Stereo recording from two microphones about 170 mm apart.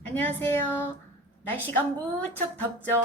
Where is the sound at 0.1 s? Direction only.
10° left (ahead or behind).